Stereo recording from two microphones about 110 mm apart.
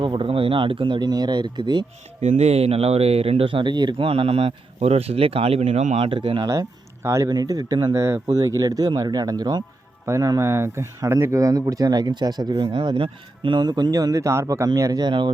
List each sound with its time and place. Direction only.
0.0 s speech: 45° right (ahead or behind)
2.2 s speech: 80° right
6.1 s speech: 50° right (ahead or behind)
6.5 s speech: 25° right (ahead or behind); by 15.3 s 45° right (ahead or behind)